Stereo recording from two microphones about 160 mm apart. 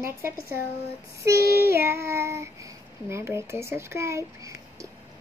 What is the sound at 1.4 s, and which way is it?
Child singing, 75° left (ahead or behind).